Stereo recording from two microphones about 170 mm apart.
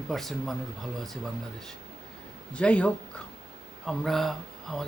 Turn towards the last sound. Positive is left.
turn(degrees=0)  # may be behind; listen again after turning